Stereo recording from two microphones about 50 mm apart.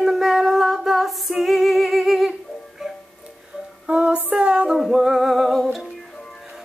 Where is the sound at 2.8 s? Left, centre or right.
Centre.